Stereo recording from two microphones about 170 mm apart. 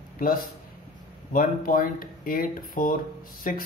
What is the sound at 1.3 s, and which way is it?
Speech, 55° left (ahead or behind).